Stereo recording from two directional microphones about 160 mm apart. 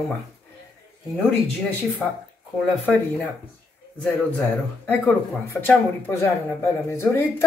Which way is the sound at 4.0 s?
10° left (ahead or behind).